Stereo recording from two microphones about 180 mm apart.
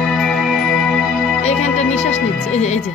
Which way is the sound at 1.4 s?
40° left (ahead or behind).